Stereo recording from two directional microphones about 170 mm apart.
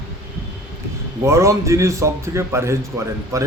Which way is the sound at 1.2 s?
15° right (ahead or behind).